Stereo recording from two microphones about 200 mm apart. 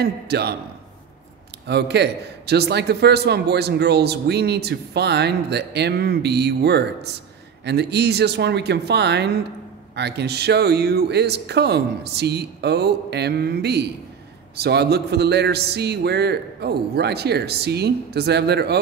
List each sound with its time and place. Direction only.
0.0 s a man's voice: 55° right (ahead or behind)
1.7 s a man's voice: 55° right (ahead or behind)